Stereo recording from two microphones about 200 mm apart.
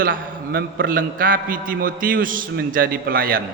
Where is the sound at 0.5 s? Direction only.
45° right (ahead or behind).